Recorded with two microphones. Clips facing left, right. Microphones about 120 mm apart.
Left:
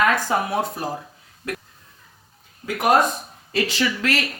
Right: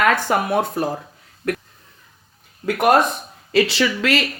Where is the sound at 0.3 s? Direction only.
60° right (ahead or behind).